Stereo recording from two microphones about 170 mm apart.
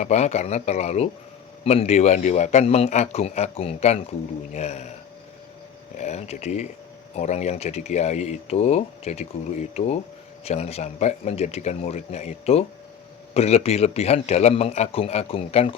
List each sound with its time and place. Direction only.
0.0 s speech: 40° left (ahead or behind)
6.0 s speech: 40° left (ahead or behind)